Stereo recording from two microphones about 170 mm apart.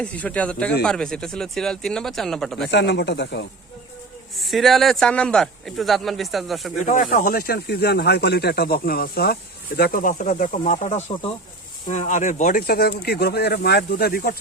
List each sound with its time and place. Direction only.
0.0 s speech: 5° left (ahead or behind)
2.6 s speech: 90° left
4.4 s speech: centre (ahead or behind)
6.8 s speech: 50° left (ahead or behind); by 14.3 s 65° left (ahead or behind)